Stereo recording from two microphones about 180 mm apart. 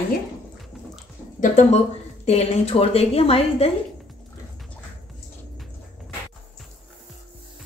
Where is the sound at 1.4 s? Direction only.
40° left (ahead or behind).